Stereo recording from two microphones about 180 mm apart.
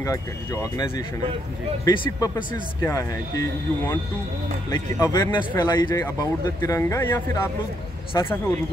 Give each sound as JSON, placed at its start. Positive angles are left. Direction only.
{"t": 0.0, "sound": "speech", "side_deg": 15}
{"t": 1.9, "sound": "speech", "side_deg": 20}
{"t": 5.0, "sound": "speech", "side_deg": 20}